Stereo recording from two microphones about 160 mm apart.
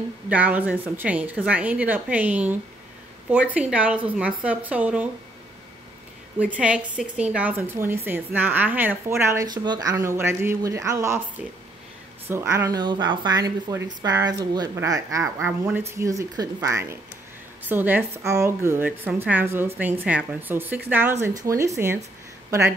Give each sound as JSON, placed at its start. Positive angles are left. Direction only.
{"t": 0.3, "sound": "a woman's voice", "side_deg": -10}
{"t": 6.4, "sound": "a woman's voice", "side_deg": -5}